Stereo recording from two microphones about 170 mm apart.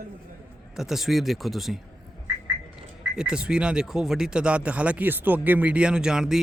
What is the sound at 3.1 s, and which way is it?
Speech, 5° right (ahead or behind).